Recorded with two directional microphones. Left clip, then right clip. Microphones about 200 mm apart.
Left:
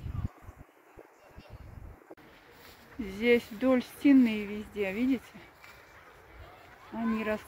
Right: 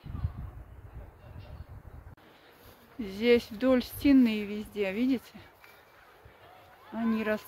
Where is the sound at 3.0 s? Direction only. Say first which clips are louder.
Right 1 dB; 10° right (ahead or behind).